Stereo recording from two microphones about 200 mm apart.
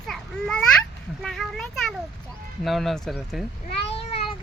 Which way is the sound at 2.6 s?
Centre (ahead or behind).